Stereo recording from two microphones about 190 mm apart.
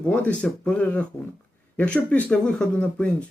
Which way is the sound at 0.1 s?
5° left (ahead or behind).